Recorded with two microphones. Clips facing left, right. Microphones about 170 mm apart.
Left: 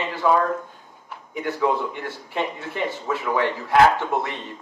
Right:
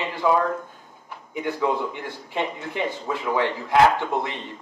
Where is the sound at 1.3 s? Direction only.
15° right (ahead or behind).